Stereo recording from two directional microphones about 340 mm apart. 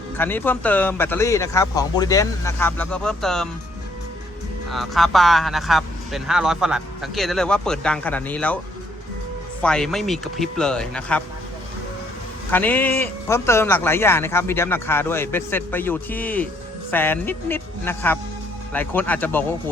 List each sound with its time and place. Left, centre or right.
0.2 s speech: centre
4.7 s speech: centre
9.6 s speech: centre
12.5 s speech: centre